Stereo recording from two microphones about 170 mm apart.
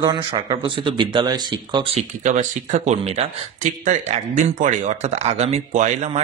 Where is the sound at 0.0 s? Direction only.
30° right (ahead or behind).